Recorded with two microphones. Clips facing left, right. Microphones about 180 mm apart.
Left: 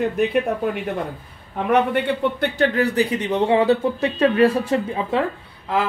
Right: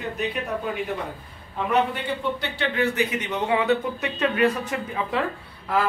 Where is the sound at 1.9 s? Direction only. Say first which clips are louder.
Left 7 dB; 55° left (ahead or behind).